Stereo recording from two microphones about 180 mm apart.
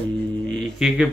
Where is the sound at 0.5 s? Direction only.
Centre (ahead or behind).